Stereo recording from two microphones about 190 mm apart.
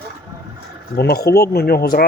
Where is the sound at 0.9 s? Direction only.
55° left (ahead or behind).